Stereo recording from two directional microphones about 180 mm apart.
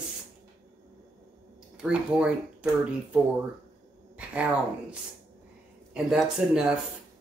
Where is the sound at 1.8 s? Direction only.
5° right (ahead or behind).